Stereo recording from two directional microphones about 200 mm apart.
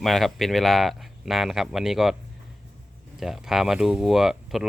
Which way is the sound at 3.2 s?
Centre (ahead or behind).